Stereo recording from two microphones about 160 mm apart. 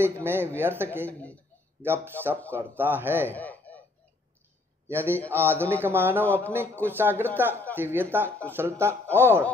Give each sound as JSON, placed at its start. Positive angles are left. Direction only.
{"t": 0.0, "sound": "a man's voice", "side_deg": -15}
{"t": 3.3, "sound": "a sound", "side_deg": 10}
{"t": 4.8, "sound": "a man's voice", "side_deg": -15}
{"t": 5.2, "sound": "speech", "side_deg": 10}
{"t": 5.5, "sound": "a man's voice", "side_deg": -15}
{"t": 6.2, "sound": "speech", "side_deg": 10}
{"t": 6.8, "sound": "a man's voice", "side_deg": -15}
{"t": 9.0, "sound": "a man's voice", "side_deg": 15}